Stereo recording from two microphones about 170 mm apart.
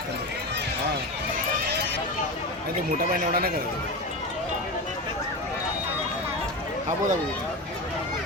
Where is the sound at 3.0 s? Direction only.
60° right (ahead or behind).